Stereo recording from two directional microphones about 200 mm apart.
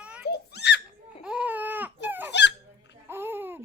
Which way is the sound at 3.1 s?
10° right (ahead or behind).